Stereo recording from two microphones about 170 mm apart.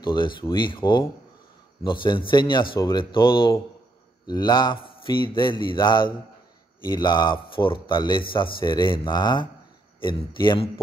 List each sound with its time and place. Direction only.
0.0 s speech: 30° left (ahead or behind)